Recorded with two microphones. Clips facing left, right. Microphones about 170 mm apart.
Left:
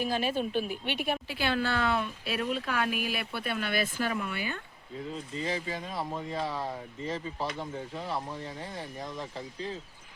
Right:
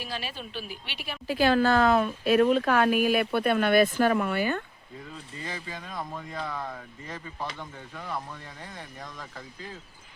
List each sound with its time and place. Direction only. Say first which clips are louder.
0.0 s a woman's voice: left 7 dB; 50° left (ahead or behind)
1.3 s speech: right 12 dB; 40° right (ahead or behind)
5.6 s speech: left 2 dB; 30° left (ahead or behind)